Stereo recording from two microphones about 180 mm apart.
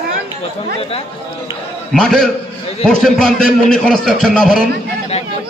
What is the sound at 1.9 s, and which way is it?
A man's voice, centre (ahead or behind).